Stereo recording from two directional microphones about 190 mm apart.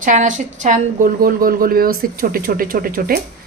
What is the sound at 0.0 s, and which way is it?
Speech, 40° right (ahead or behind).